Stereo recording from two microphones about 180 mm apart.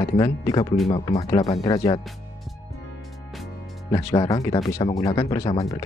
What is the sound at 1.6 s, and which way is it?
Speech, 20° left (ahead or behind).